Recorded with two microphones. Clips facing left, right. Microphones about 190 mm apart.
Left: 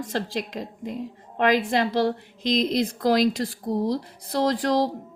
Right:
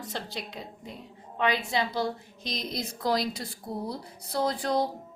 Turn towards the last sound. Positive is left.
turn(degrees=90)